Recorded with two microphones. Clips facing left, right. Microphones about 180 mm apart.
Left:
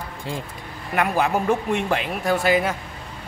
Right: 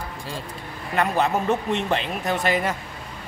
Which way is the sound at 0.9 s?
10° left (ahead or behind).